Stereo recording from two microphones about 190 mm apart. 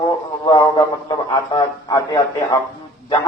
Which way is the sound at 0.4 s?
20° left (ahead or behind).